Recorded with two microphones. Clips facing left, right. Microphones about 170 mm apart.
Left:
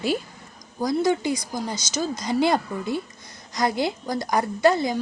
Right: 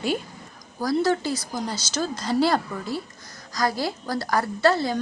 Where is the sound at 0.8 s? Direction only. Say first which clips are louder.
Left 1 dB; 15° left (ahead or behind).